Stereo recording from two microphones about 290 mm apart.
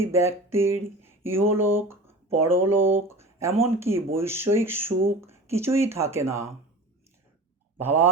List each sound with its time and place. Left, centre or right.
0.0 s speech: centre
7.8 s speech: centre